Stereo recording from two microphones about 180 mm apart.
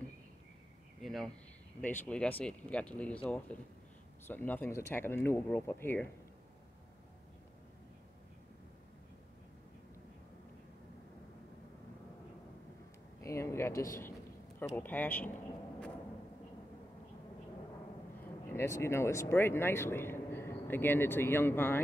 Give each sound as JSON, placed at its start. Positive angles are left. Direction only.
{"t": 1.0, "sound": "a sound", "side_deg": 0}
{"t": 1.8, "sound": "speech", "side_deg": 10}
{"t": 13.2, "sound": "speech", "side_deg": 15}
{"t": 18.5, "sound": "speech", "side_deg": 15}